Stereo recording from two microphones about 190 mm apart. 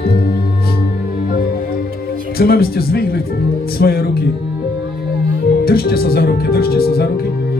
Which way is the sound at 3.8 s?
55° left (ahead or behind).